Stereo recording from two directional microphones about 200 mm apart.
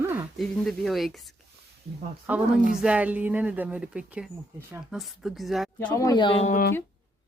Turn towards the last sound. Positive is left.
turn(degrees=40)  # may be behind; listen again after turning